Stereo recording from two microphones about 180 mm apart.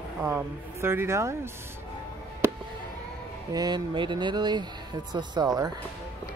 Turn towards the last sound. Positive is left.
turn(degrees=-20)  # may be behind; listen again after turning